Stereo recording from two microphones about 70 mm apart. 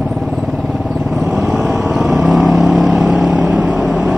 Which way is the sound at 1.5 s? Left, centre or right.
Centre.